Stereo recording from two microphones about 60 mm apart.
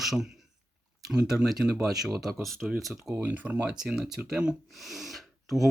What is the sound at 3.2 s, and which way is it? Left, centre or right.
Speech, right.